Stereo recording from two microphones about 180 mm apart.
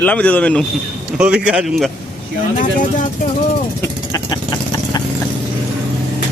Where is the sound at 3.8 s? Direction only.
20° left (ahead or behind).